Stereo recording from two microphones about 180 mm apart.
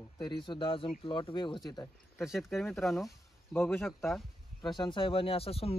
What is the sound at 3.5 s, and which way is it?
Speech, 10° left (ahead or behind).